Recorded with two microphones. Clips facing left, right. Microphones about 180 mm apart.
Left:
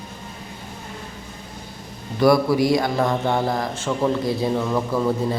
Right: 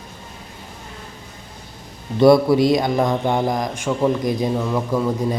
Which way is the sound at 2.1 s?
25° right (ahead or behind).